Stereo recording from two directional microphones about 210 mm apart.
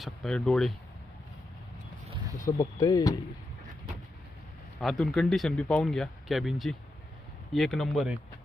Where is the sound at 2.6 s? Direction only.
15° left (ahead or behind).